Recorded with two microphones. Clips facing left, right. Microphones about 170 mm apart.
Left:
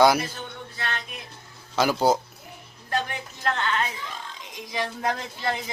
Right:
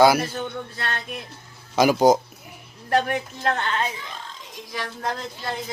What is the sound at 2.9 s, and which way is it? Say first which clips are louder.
Speech: right 7 dB; 55° right (ahead or behind).